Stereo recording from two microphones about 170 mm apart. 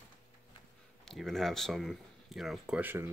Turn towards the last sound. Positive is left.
turn(degrees=-15)  # may be behind; listen again after turning